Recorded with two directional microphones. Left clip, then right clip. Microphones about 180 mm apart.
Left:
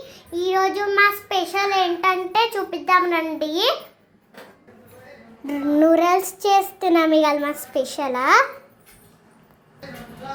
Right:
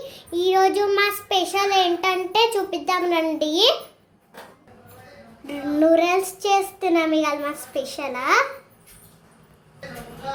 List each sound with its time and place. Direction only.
0.1 s a child's voice: 20° right (ahead or behind)
5.5 s a child's voice: 15° left (ahead or behind)